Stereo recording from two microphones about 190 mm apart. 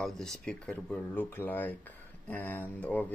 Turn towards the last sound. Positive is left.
turn(degrees=10)  # may be behind; listen again after turning